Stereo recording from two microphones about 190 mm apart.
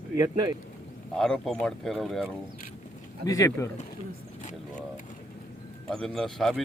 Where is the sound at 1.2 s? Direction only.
Centre (ahead or behind).